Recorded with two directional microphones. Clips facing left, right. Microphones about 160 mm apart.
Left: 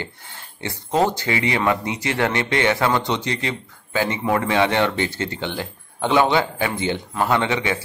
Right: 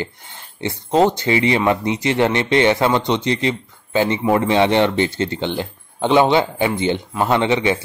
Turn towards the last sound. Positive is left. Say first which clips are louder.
# right 4 dB
turn(degrees=-20)  # may be behind; listen again after turning